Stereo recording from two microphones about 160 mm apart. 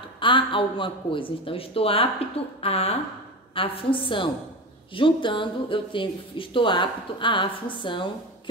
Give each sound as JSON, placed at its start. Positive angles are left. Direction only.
{"t": 0.2, "sound": "speech", "side_deg": 30}